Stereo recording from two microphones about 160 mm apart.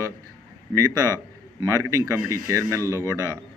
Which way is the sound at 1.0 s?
15° left (ahead or behind).